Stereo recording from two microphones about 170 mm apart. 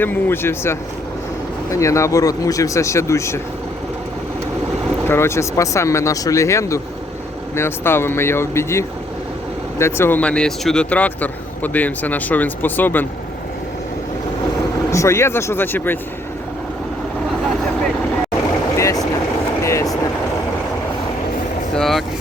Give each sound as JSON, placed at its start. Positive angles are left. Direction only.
{"t": 0.0, "sound": "speech", "side_deg": 10}
{"t": 5.0, "sound": "speech", "side_deg": 15}
{"t": 14.8, "sound": "speech", "side_deg": 15}
{"t": 18.8, "sound": "vehicle", "side_deg": 20}
{"t": 21.8, "sound": "vehicle", "side_deg": 0}